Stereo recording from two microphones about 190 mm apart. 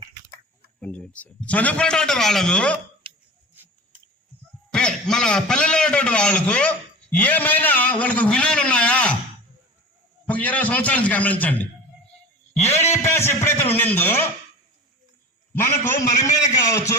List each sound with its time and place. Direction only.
0.8 s a man's voice: 5° left (ahead or behind)
3.6 s a sound: 10° right (ahead or behind)
4.7 s a man's voice: 5° left (ahead or behind)
10.2 s a man's voice: 5° left (ahead or behind)
12.7 s a man's voice: 35° left (ahead or behind)
13.0 s a man's voice: 15° left (ahead or behind)
16.2 s a man's voice: 15° left (ahead or behind)